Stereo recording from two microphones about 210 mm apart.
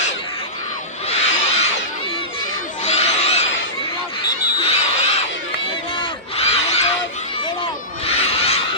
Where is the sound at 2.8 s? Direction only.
30° left (ahead or behind).